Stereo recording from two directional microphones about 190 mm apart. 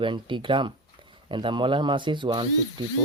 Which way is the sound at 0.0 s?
25° right (ahead or behind).